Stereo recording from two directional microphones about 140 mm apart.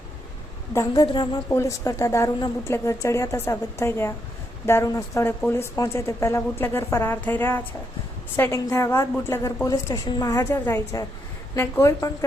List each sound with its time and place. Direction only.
0.7 s a woman's voice: 20° left (ahead or behind)
1.0 s a woman's voice: 35° left (ahead or behind)
1.5 s a woman's voice: 20° left (ahead or behind)